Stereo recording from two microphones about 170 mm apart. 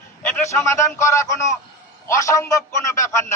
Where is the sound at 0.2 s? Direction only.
10° left (ahead or behind).